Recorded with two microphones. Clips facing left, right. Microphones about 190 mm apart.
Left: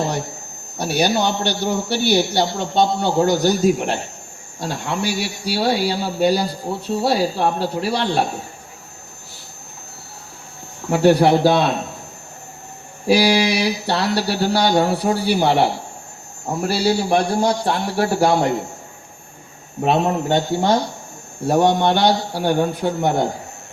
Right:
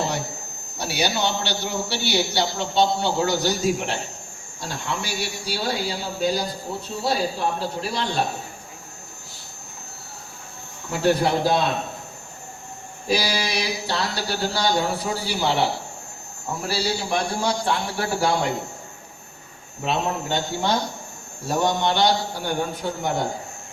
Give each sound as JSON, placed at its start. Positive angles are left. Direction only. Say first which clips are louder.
{"t": 0.8, "sound": "a man's voice", "louder": "left 6 dB", "side_deg": 55}
{"t": 10.8, "sound": "speech", "louder": "left 7 dB", "side_deg": 70}
{"t": 13.1, "sound": "a man's voice", "louder": "left 9 dB", "side_deg": 75}
{"t": 17.2, "sound": "a man's voice", "louder": "left 6 dB", "side_deg": 40}
{"t": 19.8, "sound": "a man's voice", "louder": "left 7 dB", "side_deg": 50}